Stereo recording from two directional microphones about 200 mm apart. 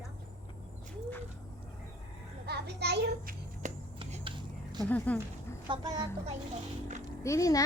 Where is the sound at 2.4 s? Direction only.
55° right (ahead or behind).